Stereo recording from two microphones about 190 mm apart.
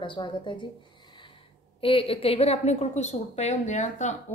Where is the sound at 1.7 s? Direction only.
30° left (ahead or behind).